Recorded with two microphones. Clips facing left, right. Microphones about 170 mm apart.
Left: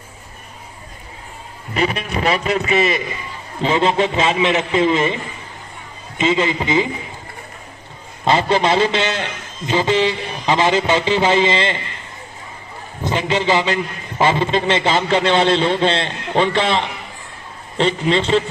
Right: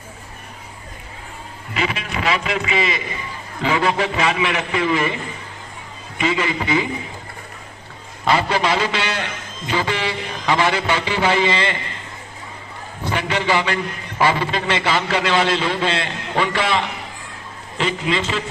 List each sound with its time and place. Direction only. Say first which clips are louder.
1.7 s a man's voice: left 4 dB; 40° left (ahead or behind)
3.6 s a man's voice: left 3 dB; 25° left (ahead or behind)
6.1 s a man's voice: left 3 dB; 25° left (ahead or behind)
8.2 s a man's voice: left 3 dB; 25° left (ahead or behind)
13.1 s a man's voice: left 3 dB; 20° left (ahead or behind)